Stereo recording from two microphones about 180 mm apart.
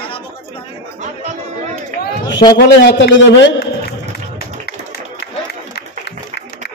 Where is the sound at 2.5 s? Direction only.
70° left (ahead or behind).